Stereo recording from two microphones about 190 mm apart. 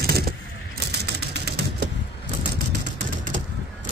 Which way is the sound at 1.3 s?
65° right (ahead or behind).